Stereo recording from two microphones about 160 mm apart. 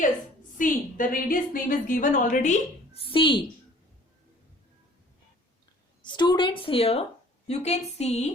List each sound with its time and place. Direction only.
0.5 s a woman's voice: 55° left (ahead or behind); by 3.4 s 35° left (ahead or behind)
6.0 s a woman's voice: 30° left (ahead or behind)